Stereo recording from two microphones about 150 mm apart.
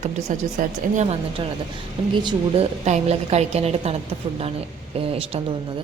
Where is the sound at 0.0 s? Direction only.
50° right (ahead or behind).